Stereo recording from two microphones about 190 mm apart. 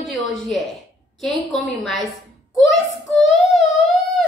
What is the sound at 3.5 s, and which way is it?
Humming, centre (ahead or behind).